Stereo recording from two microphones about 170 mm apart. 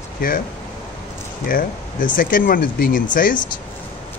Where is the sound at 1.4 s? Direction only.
55° left (ahead or behind).